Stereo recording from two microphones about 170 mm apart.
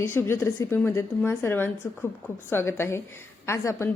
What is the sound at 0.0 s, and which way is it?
Speech, 15° left (ahead or behind).